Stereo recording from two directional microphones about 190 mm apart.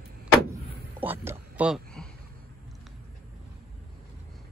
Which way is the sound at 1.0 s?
10° right (ahead or behind).